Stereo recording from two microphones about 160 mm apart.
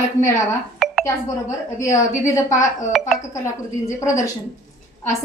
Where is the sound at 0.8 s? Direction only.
Centre (ahead or behind).